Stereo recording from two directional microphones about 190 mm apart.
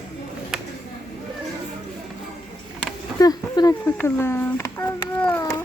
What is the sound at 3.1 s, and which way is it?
A child's voice, 20° left (ahead or behind).